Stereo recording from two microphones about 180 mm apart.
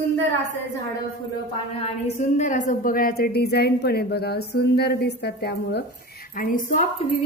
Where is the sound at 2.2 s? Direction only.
45° left (ahead or behind).